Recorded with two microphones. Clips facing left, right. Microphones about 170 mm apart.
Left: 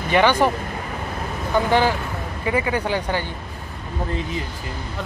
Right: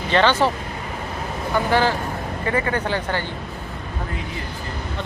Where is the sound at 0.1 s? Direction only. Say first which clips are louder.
Left 1 dB; 10° left (ahead or behind).